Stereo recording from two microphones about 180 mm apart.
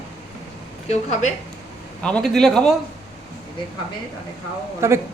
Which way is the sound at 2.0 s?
5° left (ahead or behind).